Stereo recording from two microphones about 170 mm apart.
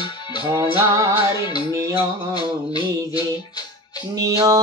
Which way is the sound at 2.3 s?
25° left (ahead or behind).